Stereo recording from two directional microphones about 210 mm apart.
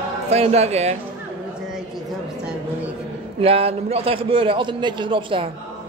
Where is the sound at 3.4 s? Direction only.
25° right (ahead or behind).